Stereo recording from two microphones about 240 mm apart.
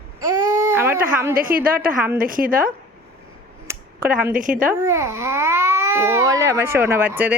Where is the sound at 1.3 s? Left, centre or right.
Right.